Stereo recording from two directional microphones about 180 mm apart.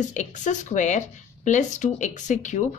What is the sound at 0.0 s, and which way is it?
A woman's voice, 45° left (ahead or behind).